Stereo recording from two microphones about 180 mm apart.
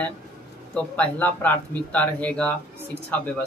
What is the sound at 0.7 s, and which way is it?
A man's voice, 5° left (ahead or behind).